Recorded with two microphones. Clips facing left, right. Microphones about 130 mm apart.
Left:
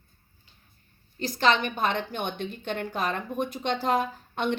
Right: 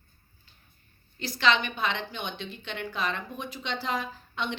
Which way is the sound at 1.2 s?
45° left (ahead or behind).